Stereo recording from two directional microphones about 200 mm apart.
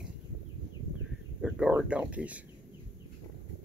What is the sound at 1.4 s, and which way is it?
Speech, 5° right (ahead or behind).